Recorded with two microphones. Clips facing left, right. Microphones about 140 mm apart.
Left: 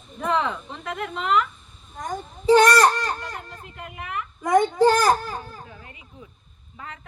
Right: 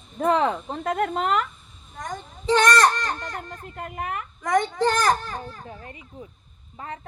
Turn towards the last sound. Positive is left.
turn(degrees=-35)  # may be behind; listen again after turning